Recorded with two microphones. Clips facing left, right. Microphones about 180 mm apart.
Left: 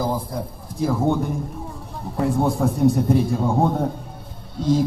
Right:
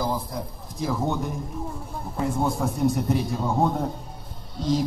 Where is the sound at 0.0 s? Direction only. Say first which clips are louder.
Left 3 dB; 25° left (ahead or behind).